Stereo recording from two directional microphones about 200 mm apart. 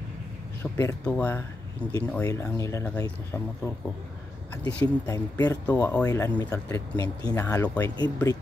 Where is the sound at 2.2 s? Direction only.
15° left (ahead or behind).